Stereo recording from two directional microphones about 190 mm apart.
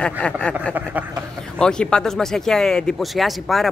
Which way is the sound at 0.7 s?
10° right (ahead or behind).